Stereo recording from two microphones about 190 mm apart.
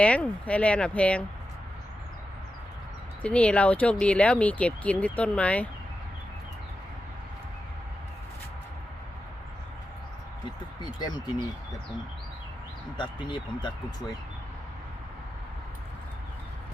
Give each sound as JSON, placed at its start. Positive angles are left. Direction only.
{"t": 0.0, "sound": "speech", "side_deg": 5}
{"t": 3.2, "sound": "speech", "side_deg": 5}
{"t": 13.0, "sound": "speech", "side_deg": 25}